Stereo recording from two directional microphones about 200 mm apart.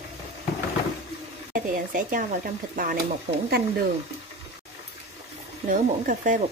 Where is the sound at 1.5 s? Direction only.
40° right (ahead or behind).